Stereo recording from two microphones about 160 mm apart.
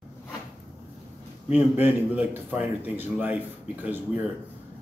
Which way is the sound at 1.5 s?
10° right (ahead or behind).